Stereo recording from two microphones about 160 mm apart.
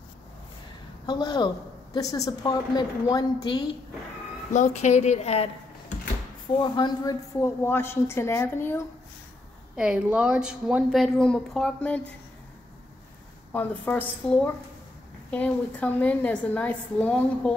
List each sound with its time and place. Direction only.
1.0 s a woman's voice: 25° left (ahead or behind)
4.5 s a woman's voice: 50° left (ahead or behind)
6.6 s a woman's voice: 25° left (ahead or behind)
9.8 s speech: 5° right (ahead or behind)
13.5 s a woman's voice: 10° left (ahead or behind)